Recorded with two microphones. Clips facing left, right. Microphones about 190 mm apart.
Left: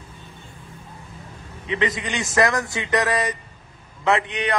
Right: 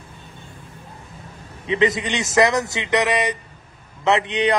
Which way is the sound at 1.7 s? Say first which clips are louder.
Right 5 dB; 30° right (ahead or behind).